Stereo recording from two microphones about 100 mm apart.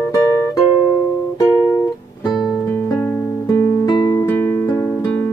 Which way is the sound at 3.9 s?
45° left (ahead or behind).